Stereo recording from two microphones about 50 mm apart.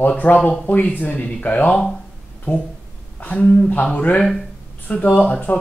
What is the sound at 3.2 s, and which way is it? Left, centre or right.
A woman's voice, left.